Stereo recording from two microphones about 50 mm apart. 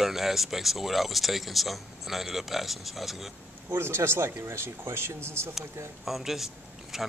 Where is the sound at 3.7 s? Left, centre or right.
Right.